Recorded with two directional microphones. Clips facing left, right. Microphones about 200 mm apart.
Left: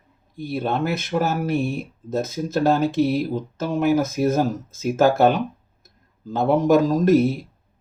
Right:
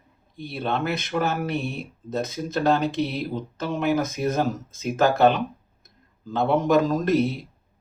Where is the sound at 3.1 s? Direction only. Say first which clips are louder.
Left 5 dB; 45° left (ahead or behind).